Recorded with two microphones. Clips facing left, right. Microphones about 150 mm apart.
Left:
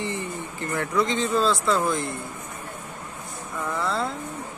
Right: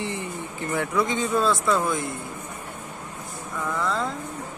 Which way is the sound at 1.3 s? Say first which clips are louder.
Right 1 dB; 25° left (ahead or behind).